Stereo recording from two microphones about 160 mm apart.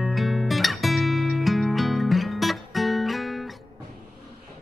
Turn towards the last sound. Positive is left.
turn(degrees=0)  # may be behind; listen again after turning